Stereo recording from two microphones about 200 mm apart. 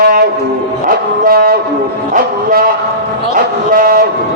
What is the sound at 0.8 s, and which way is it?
Dog, 45° right (ahead or behind).